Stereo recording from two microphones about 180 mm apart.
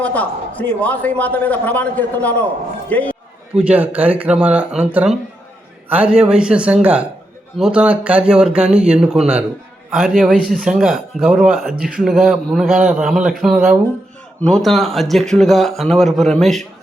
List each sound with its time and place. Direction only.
0.0 s a man's voice: 10° left (ahead or behind)
3.5 s a man's voice: 5° right (ahead or behind)